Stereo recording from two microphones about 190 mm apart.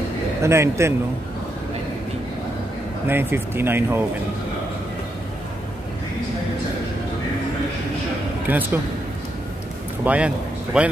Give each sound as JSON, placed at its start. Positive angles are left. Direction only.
{"t": 0.4, "sound": "speech", "side_deg": -15}
{"t": 3.1, "sound": "speech", "side_deg": -10}
{"t": 8.5, "sound": "speech", "side_deg": -10}
{"t": 10.0, "sound": "speech", "side_deg": -5}